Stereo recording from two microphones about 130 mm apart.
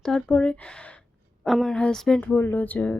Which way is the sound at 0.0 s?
5° left (ahead or behind).